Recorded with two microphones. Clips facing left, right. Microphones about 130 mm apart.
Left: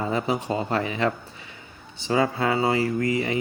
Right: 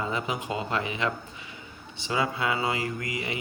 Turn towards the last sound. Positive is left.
turn(degrees=35)  # may be behind; listen again after turning